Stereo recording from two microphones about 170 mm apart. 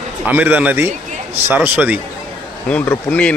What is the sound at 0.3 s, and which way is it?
Speech, 10° right (ahead or behind).